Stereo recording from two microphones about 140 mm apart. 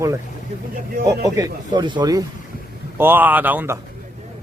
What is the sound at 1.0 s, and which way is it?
Speech, 20° right (ahead or behind).